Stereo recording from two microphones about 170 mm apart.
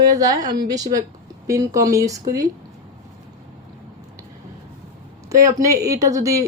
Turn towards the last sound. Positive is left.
turn(degrees=-20)  # may be behind; listen again after turning